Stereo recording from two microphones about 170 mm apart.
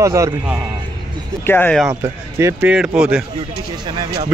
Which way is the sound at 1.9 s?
15° right (ahead or behind).